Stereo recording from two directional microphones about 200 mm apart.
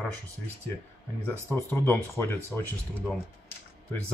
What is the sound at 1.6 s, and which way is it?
Speech, 10° left (ahead or behind).